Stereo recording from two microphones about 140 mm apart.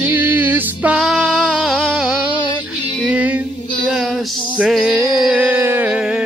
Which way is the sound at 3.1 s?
10° right (ahead or behind).